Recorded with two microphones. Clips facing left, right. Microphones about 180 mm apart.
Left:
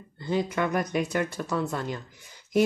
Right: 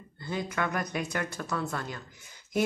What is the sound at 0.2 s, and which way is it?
Speech, 15° left (ahead or behind).